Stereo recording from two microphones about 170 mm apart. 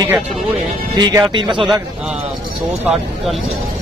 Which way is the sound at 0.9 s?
25° right (ahead or behind).